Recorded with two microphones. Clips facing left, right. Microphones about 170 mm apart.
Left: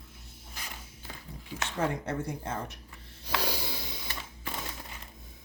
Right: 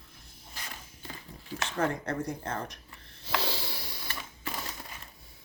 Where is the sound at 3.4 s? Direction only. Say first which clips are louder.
Left 1 dB; 15° left (ahead or behind).